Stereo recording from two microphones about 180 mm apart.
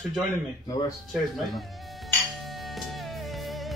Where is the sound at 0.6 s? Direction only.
20° left (ahead or behind).